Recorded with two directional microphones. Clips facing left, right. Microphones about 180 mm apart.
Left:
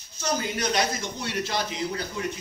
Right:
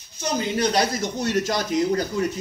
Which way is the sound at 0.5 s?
35° right (ahead or behind).